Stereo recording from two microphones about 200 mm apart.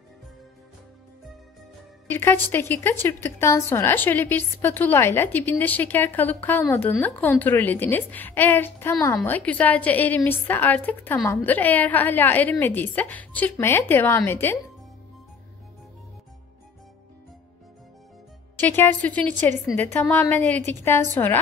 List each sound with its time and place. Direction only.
2.0 s a woman's voice: 10° left (ahead or behind)
18.6 s a woman's voice: 10° left (ahead or behind)